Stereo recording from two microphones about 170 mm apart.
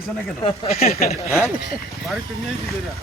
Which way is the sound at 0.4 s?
35° left (ahead or behind).